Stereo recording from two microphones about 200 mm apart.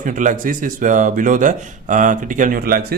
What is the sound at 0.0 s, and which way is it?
Speech, 40° right (ahead or behind).